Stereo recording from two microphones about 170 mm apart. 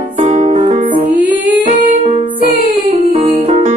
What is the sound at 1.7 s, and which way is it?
Music, 40° right (ahead or behind).